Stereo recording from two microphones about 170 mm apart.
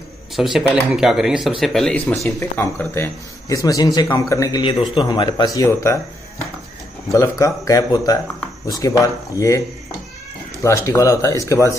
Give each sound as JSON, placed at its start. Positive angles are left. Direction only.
{"t": 0.4, "sound": "speech", "side_deg": 0}
{"t": 7.2, "sound": "speech", "side_deg": 20}
{"t": 10.6, "sound": "speech", "side_deg": 15}